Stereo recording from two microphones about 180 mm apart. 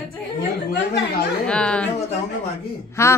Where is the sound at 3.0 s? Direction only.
15° left (ahead or behind).